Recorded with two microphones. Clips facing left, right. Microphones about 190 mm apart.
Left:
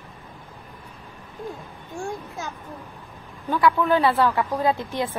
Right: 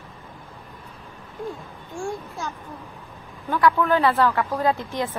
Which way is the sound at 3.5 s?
15° left (ahead or behind).